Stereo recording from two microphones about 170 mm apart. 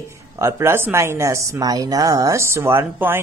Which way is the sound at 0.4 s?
15° right (ahead or behind).